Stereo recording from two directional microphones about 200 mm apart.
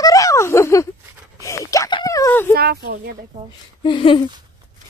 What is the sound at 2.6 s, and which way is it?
Speech, 50° right (ahead or behind).